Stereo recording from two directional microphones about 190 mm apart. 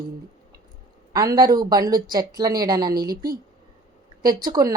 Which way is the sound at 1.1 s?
20° right (ahead or behind).